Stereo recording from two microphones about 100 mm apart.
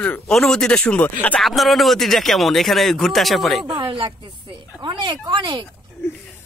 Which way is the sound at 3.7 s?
55° right (ahead or behind).